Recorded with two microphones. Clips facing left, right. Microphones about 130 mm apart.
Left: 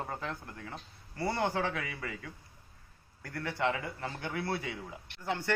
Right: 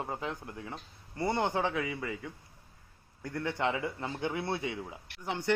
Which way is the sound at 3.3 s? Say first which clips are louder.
Right 1 dB; 20° right (ahead or behind).